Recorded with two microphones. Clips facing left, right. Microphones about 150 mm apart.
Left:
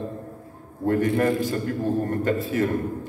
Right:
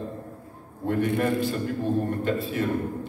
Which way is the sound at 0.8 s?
45° left (ahead or behind).